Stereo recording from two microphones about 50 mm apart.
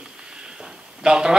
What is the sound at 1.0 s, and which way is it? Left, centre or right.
Speech, centre.